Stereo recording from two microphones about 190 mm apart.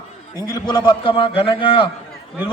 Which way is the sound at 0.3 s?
20° left (ahead or behind).